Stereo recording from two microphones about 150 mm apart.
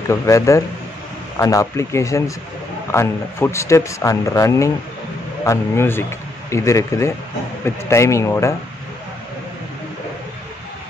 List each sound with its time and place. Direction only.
0.1 s a man's voice: 20° left (ahead or behind)